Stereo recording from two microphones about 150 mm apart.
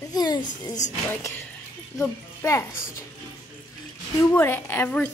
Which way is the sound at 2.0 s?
20° left (ahead or behind).